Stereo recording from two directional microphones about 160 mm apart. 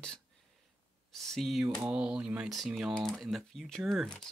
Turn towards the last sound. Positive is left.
turn(degrees=5)  # may be behind; listen again after turning